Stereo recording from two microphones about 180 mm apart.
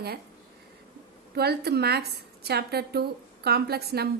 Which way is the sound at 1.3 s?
65° right (ahead or behind).